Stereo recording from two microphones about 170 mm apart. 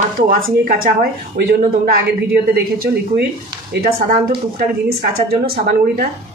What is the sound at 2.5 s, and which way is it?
Speech, 65° right (ahead or behind).